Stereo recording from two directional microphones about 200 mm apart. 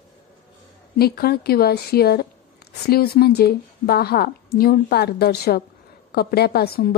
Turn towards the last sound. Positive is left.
turn(degrees=50)  # may be behind; listen again after turning